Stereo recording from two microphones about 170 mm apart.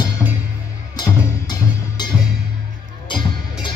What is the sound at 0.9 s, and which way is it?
Music, 25° left (ahead or behind).